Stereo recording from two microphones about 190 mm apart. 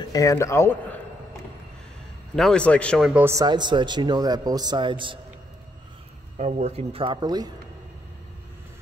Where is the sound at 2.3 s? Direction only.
5° left (ahead or behind).